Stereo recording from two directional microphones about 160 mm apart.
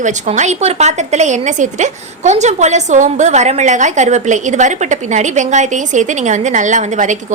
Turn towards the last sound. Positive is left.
turn(degrees=-50)  # may be behind; listen again after turning